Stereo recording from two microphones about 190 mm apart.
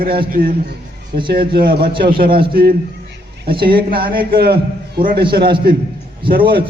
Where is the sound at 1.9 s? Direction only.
25° right (ahead or behind).